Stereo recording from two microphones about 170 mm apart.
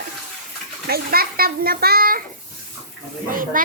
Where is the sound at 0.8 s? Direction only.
65° right (ahead or behind).